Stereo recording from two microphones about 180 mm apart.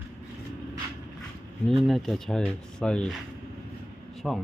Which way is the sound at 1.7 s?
Centre (ahead or behind).